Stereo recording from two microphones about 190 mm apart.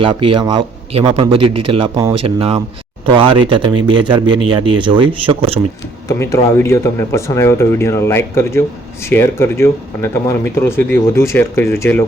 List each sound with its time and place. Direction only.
0.0 s speech: 25° right (ahead or behind)
6.1 s speech: 15° left (ahead or behind)